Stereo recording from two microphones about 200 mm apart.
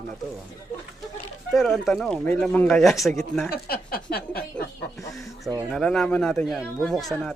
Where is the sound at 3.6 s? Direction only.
50° left (ahead or behind).